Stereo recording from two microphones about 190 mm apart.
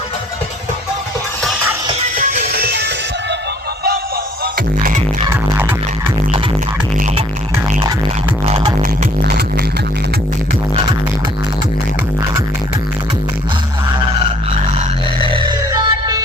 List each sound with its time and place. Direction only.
2.1 s music: 50° right (ahead or behind)
4.8 s music: 45° right (ahead or behind)
5.3 s music: 10° right (ahead or behind)
8.8 s music: 55° right (ahead or behind)
14.8 s music: 25° right (ahead or behind)